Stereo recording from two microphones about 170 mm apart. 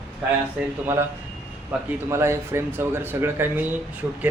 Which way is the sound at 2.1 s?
15° right (ahead or behind).